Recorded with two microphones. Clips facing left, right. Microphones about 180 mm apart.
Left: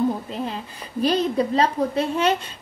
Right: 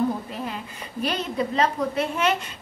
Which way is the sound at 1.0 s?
35° left (ahead or behind).